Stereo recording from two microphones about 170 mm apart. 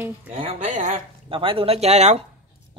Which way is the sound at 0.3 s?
30° right (ahead or behind).